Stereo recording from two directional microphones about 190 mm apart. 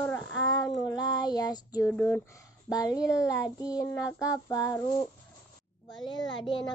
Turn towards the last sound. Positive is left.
turn(degrees=25)  # may be behind; listen again after turning